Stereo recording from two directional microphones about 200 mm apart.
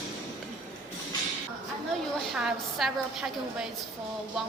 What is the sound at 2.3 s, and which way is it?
A woman's voice, centre (ahead or behind).